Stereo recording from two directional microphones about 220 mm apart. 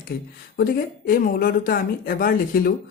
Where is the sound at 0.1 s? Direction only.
45° left (ahead or behind).